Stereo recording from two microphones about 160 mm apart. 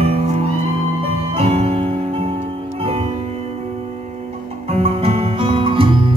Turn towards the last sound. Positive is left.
turn(degrees=-35)  # may be behind; listen again after turning